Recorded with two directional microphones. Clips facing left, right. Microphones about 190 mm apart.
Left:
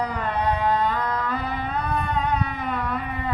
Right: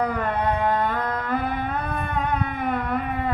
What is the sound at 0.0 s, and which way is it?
Music, 50° right (ahead or behind).